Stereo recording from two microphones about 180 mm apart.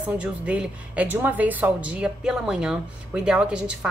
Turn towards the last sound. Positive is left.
turn(degrees=-5)  # may be behind; listen again after turning